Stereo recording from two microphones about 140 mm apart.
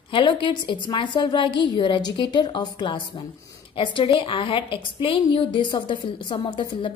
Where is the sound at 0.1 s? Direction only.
35° left (ahead or behind).